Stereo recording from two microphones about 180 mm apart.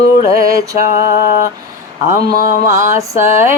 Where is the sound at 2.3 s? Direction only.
60° left (ahead or behind).